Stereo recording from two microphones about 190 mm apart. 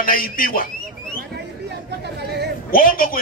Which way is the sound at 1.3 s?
60° right (ahead or behind).